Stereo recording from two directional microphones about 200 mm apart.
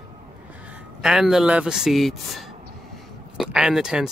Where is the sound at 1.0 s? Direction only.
Centre (ahead or behind).